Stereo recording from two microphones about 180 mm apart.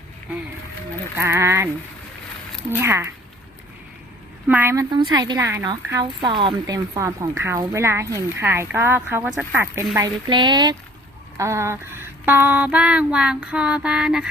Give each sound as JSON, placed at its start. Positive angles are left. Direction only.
{"t": 1.1, "sound": "a woman's voice", "side_deg": -15}
{"t": 2.7, "sound": "a woman's voice", "side_deg": -15}
{"t": 4.4, "sound": "a woman's voice", "side_deg": -10}
{"t": 10.2, "sound": "a woman's voice", "side_deg": -25}